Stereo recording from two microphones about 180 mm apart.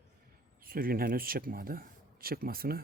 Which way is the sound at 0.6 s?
55° right (ahead or behind).